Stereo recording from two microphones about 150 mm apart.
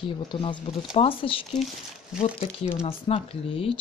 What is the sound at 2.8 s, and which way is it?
Speech, 40° left (ahead or behind).